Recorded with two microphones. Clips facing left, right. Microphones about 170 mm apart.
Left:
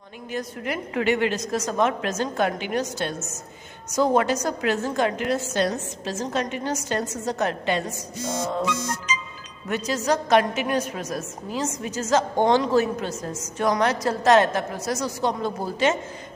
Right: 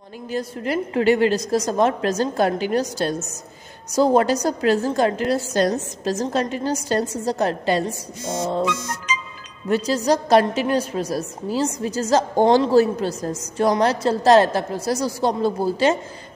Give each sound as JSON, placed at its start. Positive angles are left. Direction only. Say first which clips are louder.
{"t": 0.3, "sound": "a woman's voice", "louder": "right 5 dB", "side_deg": -30}
{"t": 9.1, "sound": "music", "louder": "right 6 dB", "side_deg": -60}
{"t": 9.7, "sound": "a woman's voice", "louder": "right 5 dB", "side_deg": -30}